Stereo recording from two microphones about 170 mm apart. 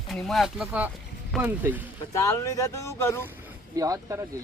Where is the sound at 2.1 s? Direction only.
15° left (ahead or behind).